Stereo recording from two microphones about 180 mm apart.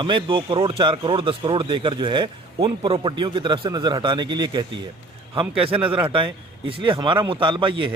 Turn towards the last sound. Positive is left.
turn(degrees=-30)  # may be behind; listen again after turning